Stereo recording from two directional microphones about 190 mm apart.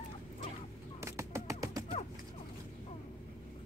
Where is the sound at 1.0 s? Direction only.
15° right (ahead or behind).